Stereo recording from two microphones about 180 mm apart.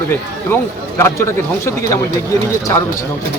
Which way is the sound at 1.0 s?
15° left (ahead or behind).